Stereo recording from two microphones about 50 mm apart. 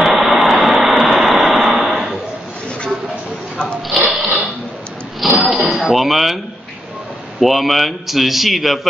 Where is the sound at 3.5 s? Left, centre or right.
Centre.